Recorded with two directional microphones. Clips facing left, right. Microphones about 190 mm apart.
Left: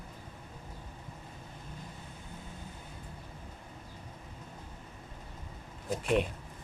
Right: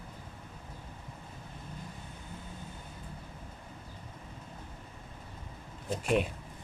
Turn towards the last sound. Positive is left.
turn(degrees=0)  # may be behind; listen again after turning